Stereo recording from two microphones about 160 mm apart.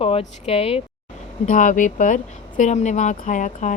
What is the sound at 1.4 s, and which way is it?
Speech, 55° left (ahead or behind).